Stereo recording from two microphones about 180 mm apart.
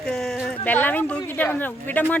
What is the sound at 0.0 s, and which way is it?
A woman's voice, 5° left (ahead or behind).